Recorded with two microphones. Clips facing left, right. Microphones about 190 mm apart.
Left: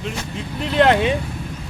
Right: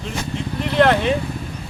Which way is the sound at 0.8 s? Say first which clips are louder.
Left 1 dB; 15° left (ahead or behind).